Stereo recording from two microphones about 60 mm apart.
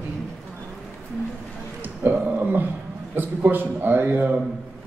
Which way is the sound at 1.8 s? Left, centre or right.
Right.